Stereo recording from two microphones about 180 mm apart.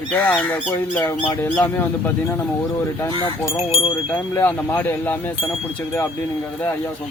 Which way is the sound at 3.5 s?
30° left (ahead or behind).